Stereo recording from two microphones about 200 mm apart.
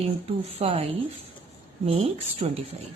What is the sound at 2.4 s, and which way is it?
Speech, 35° right (ahead or behind).